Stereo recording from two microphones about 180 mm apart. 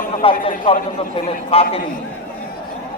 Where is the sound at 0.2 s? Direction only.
30° left (ahead or behind).